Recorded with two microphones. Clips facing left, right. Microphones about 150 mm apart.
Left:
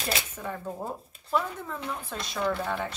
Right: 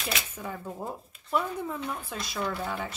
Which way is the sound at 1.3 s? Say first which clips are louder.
Even; 10° right (ahead or behind).